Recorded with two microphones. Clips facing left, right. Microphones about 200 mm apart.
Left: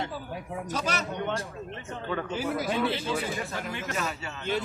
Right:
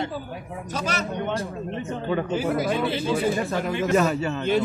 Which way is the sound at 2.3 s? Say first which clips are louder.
Right 3 dB; 50° right (ahead or behind).